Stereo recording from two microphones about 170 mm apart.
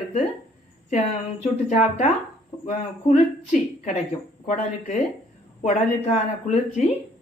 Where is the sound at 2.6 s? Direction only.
45° left (ahead or behind).